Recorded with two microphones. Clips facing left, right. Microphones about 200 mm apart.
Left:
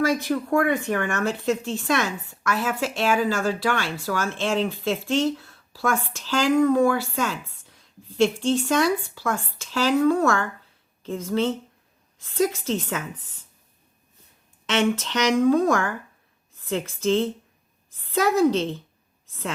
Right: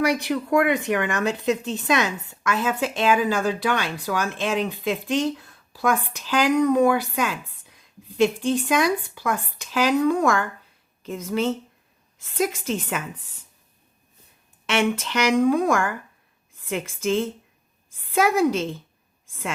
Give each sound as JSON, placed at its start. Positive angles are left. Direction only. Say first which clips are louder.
{"t": 0.0, "sound": "speech", "louder": "even", "side_deg": -15}
{"t": 14.7, "sound": "a woman's voice", "louder": "even", "side_deg": -10}